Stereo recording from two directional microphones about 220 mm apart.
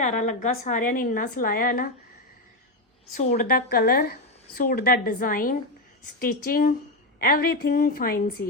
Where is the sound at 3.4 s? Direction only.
45° left (ahead or behind).